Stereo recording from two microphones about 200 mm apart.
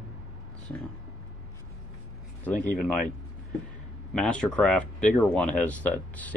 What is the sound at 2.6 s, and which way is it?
Speech, 40° left (ahead or behind).